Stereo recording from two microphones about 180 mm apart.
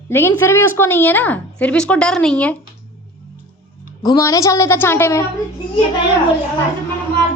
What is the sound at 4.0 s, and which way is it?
A woman's voice, 20° left (ahead or behind).